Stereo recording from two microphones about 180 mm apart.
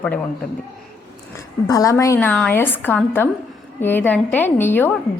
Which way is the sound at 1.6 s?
20° left (ahead or behind).